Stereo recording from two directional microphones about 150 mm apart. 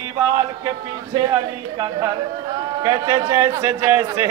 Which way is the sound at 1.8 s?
30° right (ahead or behind).